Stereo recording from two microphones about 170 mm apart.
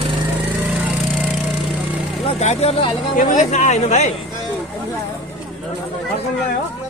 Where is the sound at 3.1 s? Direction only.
50° left (ahead or behind).